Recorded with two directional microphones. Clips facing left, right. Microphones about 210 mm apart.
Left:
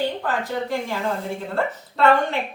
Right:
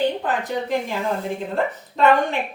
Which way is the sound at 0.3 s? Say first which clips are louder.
Right 1 dB; 20° right (ahead or behind).